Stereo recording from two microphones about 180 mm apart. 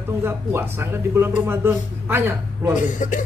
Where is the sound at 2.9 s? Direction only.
45° left (ahead or behind).